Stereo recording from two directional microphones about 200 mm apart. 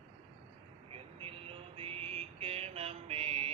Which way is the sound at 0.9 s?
30° right (ahead or behind).